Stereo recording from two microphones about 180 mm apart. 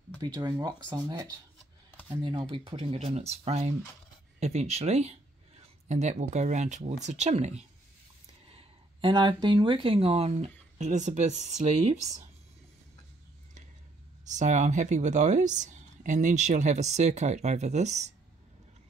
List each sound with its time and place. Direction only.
0.2 s speech: 20° right (ahead or behind); by 12.3 s 40° right (ahead or behind)
14.2 s speech: 40° right (ahead or behind)